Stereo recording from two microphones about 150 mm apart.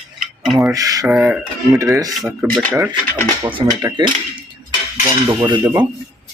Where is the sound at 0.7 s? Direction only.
25° right (ahead or behind).